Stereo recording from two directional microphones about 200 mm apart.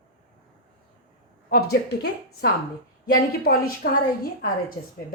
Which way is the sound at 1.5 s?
50° left (ahead or behind).